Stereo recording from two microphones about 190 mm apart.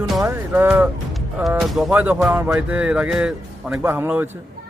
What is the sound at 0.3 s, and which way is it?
Speech, 10° right (ahead or behind).